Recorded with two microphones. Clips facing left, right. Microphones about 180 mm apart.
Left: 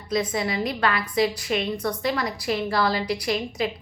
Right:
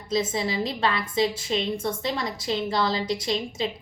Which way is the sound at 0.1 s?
25° right (ahead or behind).